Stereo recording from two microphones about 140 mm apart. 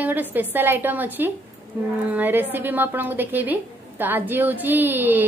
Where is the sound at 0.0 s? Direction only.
10° right (ahead or behind).